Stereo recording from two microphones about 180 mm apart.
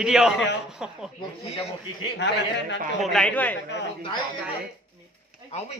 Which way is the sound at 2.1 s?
80° left.